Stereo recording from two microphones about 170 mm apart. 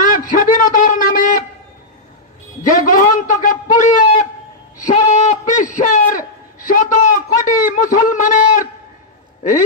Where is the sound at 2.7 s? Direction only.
50° left (ahead or behind).